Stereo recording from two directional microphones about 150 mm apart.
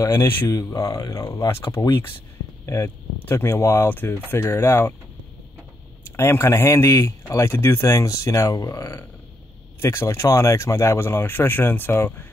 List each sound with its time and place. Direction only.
0.0 s speech: 20° left (ahead or behind)
6.1 s speech: 15° left (ahead or behind)